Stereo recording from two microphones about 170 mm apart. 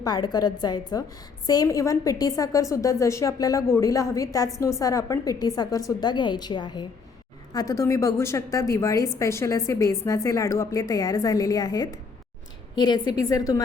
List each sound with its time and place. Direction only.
0.0 s a woman's voice: 25° left (ahead or behind)